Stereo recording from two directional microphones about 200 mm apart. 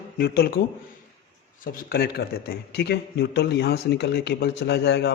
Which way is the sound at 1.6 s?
45° left (ahead or behind).